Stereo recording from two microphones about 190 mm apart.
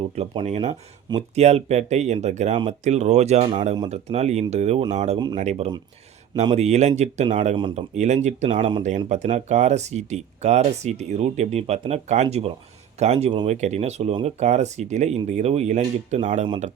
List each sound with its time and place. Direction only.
0.2 s speech: 35° right (ahead or behind)
5.1 s speech: 20° right (ahead or behind)
5.4 s speech: 35° right (ahead or behind)
8.4 s speech: 25° right (ahead or behind)
9.0 s speech: 35° right (ahead or behind)